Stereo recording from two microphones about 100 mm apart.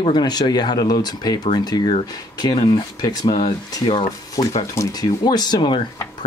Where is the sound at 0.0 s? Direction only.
45° left (ahead or behind).